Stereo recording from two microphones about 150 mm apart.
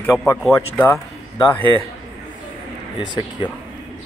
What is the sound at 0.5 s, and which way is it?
Speech, 15° left (ahead or behind).